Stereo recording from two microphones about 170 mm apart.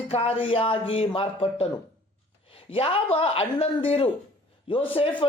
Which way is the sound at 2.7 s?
35° left (ahead or behind).